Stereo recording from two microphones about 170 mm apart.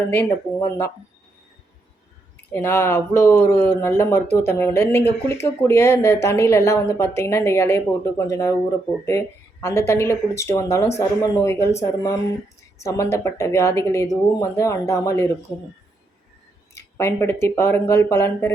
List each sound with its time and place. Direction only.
0.1 s speech: 15° left (ahead or behind)
2.5 s speech: 15° left (ahead or behind)
12.8 s speech: 20° left (ahead or behind)
16.7 s speech: 15° left (ahead or behind)